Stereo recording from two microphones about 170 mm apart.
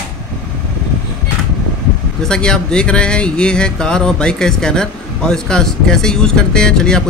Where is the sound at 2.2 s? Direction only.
5° left (ahead or behind).